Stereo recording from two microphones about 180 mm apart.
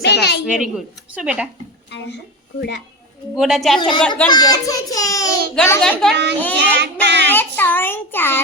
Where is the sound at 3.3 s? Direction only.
Centre (ahead or behind).